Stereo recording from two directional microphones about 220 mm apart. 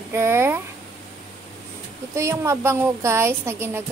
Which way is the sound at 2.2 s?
15° right (ahead or behind).